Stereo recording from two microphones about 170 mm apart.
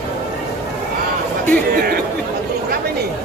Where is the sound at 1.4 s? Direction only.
60° right (ahead or behind).